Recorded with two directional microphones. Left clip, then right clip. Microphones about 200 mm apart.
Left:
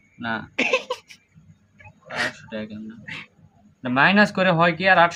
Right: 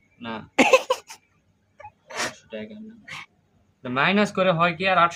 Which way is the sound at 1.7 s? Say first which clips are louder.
Left 3 dB; 30° right (ahead or behind).